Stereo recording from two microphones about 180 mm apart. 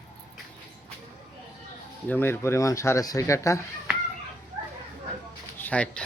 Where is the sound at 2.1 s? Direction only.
10° left (ahead or behind).